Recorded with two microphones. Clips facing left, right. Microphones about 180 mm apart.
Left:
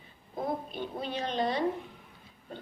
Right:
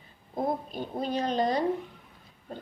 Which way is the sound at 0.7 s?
40° right (ahead or behind).